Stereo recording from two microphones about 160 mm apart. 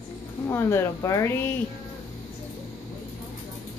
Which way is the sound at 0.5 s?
15° left (ahead or behind).